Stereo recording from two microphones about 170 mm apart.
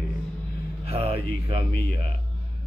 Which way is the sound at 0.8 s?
35° right (ahead or behind).